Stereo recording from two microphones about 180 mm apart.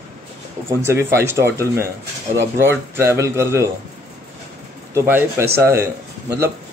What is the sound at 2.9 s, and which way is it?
Speech, 15° right (ahead or behind).